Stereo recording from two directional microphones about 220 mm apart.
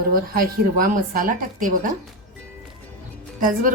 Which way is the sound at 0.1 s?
40° right (ahead or behind).